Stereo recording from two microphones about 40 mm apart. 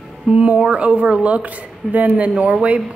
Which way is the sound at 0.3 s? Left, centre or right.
Right.